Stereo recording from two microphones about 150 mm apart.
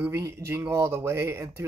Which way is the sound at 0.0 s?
20° right (ahead or behind).